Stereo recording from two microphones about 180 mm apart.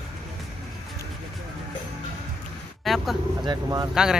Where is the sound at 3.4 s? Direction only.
20° right (ahead or behind).